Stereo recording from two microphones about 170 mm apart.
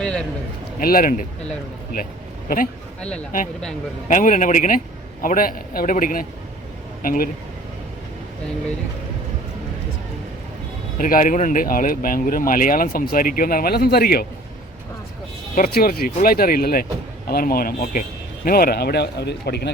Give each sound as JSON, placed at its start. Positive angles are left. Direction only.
{"t": 0.0, "sound": "a sound", "side_deg": 5}
{"t": 0.8, "sound": "speech", "side_deg": 60}
{"t": 4.1, "sound": "a man's voice", "side_deg": 50}
{"t": 10.9, "sound": "speech", "side_deg": 50}
{"t": 15.5, "sound": "speech", "side_deg": 60}